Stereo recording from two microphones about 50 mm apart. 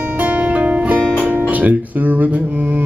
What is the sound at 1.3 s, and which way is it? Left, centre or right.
Guitar, right.